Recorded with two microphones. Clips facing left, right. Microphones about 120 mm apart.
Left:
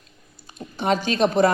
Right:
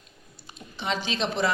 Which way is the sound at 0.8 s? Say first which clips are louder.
Left 8 dB; 50° left (ahead or behind).